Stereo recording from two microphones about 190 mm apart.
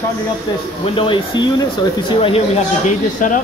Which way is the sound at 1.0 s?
25° left (ahead or behind).